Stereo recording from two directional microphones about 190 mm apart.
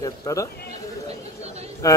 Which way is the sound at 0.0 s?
15° left (ahead or behind).